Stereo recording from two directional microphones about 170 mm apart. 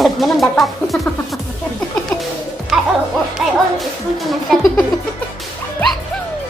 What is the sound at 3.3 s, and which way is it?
Speech, centre (ahead or behind).